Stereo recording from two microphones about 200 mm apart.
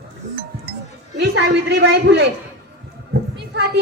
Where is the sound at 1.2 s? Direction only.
60° right (ahead or behind).